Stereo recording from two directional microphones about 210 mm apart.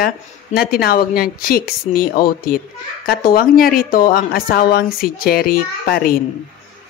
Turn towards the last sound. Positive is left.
turn(degrees=45)  # may be behind; listen again after turning